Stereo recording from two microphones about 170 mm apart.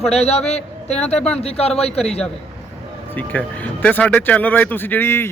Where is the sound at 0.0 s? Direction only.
40° left (ahead or behind).